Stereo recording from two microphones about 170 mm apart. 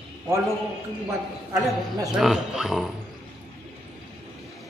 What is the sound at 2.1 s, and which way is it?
Speech, 5° right (ahead or behind).